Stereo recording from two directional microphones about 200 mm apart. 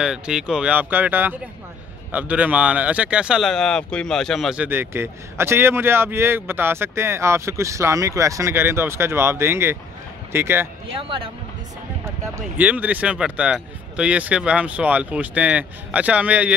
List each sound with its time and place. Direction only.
0.0 s speech: 5° right (ahead or behind)
11.0 s speech: 25° right (ahead or behind)
12.5 s speech: 5° right (ahead or behind)